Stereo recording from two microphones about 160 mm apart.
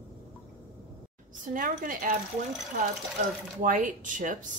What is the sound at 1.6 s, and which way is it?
Speech, 60° right (ahead or behind).